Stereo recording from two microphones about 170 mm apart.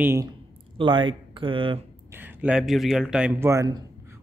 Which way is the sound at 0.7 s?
30° right (ahead or behind).